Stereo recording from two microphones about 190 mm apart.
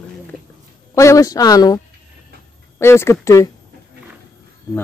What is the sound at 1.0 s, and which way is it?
Speech, 15° left (ahead or behind).